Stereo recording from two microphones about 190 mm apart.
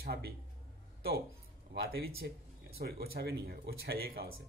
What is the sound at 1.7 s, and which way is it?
A man's voice, 55° right (ahead or behind).